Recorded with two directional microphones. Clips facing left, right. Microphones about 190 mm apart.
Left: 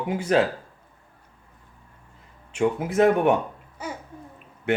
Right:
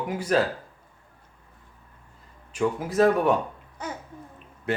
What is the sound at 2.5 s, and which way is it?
Speech, 25° left (ahead or behind).